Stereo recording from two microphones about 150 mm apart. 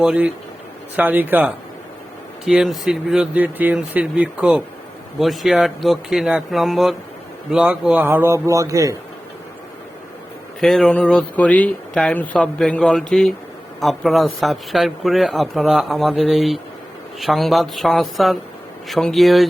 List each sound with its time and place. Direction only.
0.0 s a man's voice: 5° right (ahead or behind); by 9.0 s 20° right (ahead or behind)
10.6 s speech: 5° left (ahead or behind)